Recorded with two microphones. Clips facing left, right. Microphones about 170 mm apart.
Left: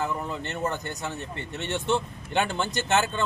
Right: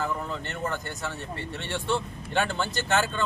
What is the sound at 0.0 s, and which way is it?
Speech, 20° left (ahead or behind).